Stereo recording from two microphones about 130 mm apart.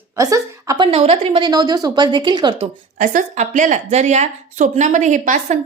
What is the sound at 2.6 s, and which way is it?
Speech, 90° right.